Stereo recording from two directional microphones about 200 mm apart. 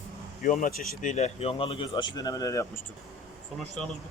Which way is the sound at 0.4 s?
40° left (ahead or behind).